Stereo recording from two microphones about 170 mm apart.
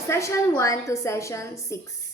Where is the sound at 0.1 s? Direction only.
15° left (ahead or behind).